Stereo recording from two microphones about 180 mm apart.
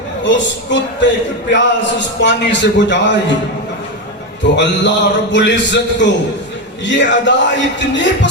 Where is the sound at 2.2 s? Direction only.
80° left.